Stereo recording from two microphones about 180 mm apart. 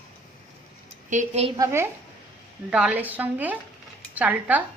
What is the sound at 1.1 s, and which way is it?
Speech, 40° right (ahead or behind).